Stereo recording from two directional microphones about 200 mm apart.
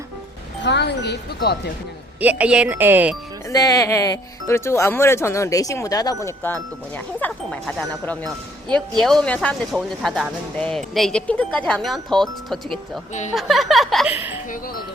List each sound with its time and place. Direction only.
0.6 s speech: 60° left (ahead or behind)
2.4 s speech: 5° right (ahead or behind)
3.5 s speech: 15° left (ahead or behind); by 14.3 s 10° right (ahead or behind)